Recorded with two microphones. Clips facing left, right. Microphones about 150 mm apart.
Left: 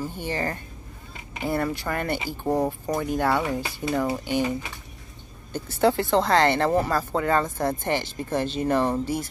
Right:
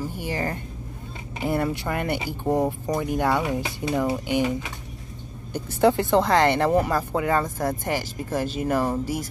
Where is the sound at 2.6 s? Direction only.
Centre (ahead or behind).